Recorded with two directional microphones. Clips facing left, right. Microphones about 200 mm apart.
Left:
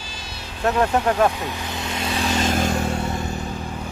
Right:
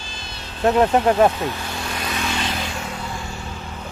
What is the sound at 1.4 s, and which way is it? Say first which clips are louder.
Vehicle: right 2 dB; 20° left (ahead or behind).